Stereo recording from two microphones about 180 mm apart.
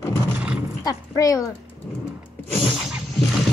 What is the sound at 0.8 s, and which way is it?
Speech, 20° left (ahead or behind).